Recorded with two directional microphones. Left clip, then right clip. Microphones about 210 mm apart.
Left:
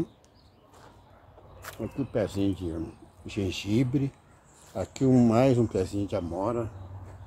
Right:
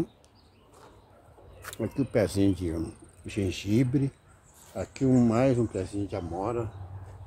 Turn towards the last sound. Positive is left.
turn(degrees=10)  # may be behind; listen again after turning